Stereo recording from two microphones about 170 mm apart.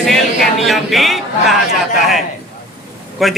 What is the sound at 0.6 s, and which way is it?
Speech, centre (ahead or behind).